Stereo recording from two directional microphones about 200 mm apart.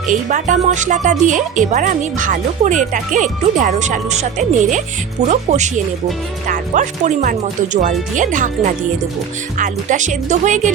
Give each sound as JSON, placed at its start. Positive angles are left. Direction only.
{"t": 0.1, "sound": "speech", "side_deg": -40}